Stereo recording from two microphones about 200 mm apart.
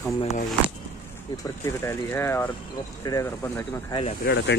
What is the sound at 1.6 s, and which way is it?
Speech, 15° left (ahead or behind).